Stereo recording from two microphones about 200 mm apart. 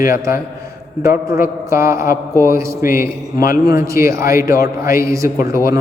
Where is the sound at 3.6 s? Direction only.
15° right (ahead or behind).